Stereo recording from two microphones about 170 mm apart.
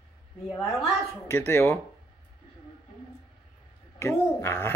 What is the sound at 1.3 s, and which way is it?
Speech, 15° left (ahead or behind).